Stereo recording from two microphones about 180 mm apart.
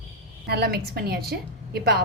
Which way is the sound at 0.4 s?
65° right (ahead or behind).